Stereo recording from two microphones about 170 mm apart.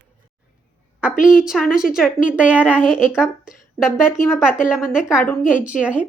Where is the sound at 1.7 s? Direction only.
5° right (ahead or behind).